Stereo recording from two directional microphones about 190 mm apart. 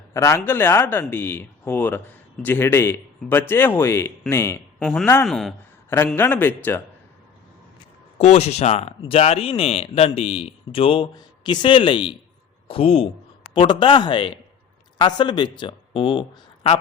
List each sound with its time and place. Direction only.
0.1 s speech: 15° left (ahead or behind)
8.2 s speech: 35° left (ahead or behind)